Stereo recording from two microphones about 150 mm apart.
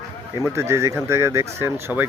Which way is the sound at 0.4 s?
20° right (ahead or behind).